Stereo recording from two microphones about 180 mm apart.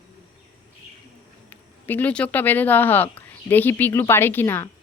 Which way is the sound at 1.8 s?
10° left (ahead or behind).